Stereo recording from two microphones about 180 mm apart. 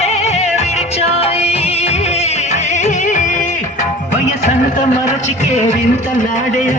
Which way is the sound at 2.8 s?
45° left (ahead or behind).